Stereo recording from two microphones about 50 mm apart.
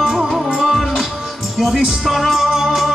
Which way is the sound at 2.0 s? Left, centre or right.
Centre.